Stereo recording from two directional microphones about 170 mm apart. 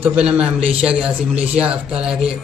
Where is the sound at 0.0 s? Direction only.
5° right (ahead or behind).